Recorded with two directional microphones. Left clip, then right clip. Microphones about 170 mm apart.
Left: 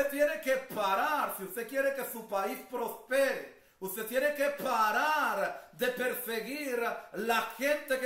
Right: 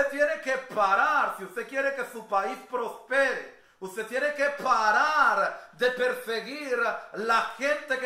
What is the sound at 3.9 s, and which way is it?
Speech, 45° left (ahead or behind).